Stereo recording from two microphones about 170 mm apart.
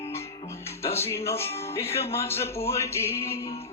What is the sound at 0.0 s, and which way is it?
Music, 15° left (ahead or behind).